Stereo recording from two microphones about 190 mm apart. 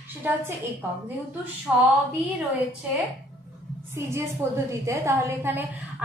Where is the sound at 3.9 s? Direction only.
15° right (ahead or behind).